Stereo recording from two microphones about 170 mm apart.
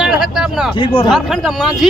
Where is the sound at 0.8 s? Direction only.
30° left (ahead or behind).